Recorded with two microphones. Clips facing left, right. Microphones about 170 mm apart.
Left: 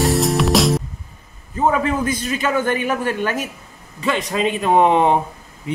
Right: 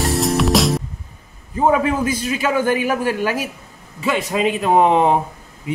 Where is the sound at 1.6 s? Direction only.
10° right (ahead or behind).